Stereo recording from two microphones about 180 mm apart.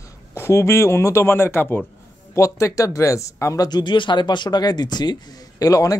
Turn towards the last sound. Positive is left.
turn(degrees=20)  # may be behind; listen again after turning